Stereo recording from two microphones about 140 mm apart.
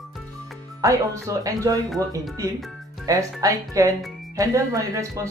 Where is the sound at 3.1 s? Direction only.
25° right (ahead or behind).